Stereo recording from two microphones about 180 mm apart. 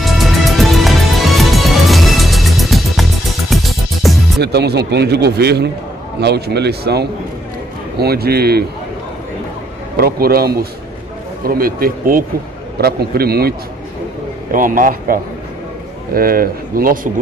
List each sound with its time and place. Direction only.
0.0 s music: centre (ahead or behind)
4.4 s speech: 65° right (ahead or behind)
9.9 s speech: 55° right (ahead or behind)
14.5 s speech: 50° right (ahead or behind)